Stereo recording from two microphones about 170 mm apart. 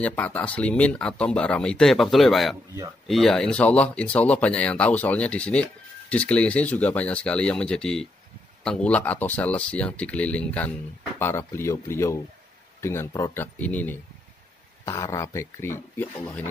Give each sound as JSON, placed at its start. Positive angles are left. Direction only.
{"t": 0.0, "sound": "speech", "side_deg": 10}